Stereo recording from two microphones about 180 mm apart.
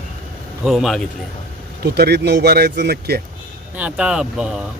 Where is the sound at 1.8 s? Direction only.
65° right (ahead or behind).